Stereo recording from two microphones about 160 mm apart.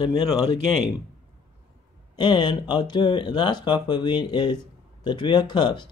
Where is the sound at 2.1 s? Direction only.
30° left (ahead or behind).